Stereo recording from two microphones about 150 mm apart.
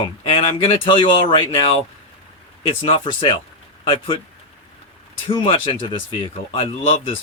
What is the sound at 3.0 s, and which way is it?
Speech, 30° left (ahead or behind).